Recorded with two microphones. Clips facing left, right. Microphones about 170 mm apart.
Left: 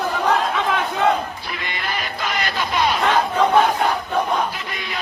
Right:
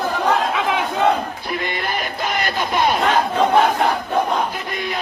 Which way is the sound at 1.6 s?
50° right (ahead or behind).